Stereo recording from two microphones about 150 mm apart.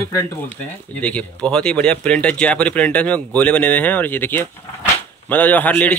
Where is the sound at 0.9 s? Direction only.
10° left (ahead or behind).